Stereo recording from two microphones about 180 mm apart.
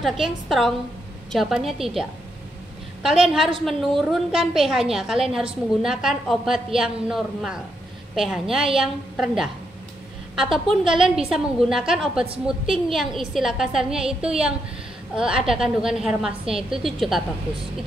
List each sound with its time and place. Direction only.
0.0 s a woman's voice: centre (ahead or behind)
3.6 s a woman's voice: centre (ahead or behind)
10.3 s a woman's voice: centre (ahead or behind)
16.4 s a woman's voice: 30° right (ahead or behind)
16.8 s a woman's voice: centre (ahead or behind)